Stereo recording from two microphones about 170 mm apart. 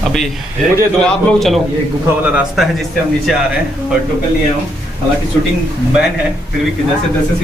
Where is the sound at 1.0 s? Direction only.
Centre (ahead or behind).